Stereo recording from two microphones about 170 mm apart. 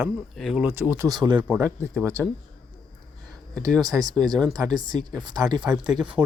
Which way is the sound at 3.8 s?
20° right (ahead or behind).